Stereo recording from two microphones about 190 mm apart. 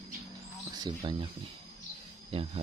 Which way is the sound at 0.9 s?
25° right (ahead or behind).